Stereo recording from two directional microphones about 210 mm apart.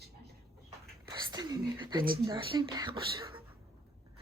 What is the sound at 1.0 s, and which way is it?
Whispering, 20° right (ahead or behind).